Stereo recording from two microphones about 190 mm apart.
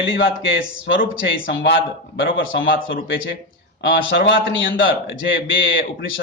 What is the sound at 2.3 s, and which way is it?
Speech, 85° left.